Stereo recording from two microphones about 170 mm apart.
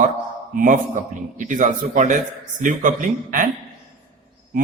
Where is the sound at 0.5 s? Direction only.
50° right (ahead or behind).